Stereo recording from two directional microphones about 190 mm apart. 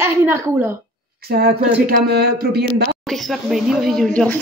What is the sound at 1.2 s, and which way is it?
Speech, 55° right (ahead or behind).